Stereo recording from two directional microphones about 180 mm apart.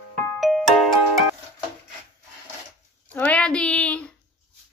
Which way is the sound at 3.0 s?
10° left (ahead or behind).